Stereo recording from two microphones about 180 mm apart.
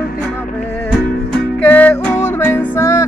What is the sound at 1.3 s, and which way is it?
Music, 10° left (ahead or behind).